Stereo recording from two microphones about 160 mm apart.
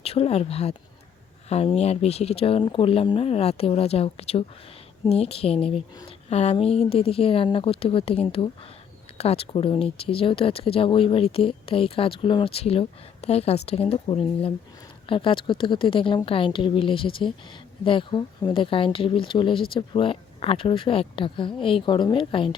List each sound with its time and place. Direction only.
0.0 s speech: 40° left (ahead or behind)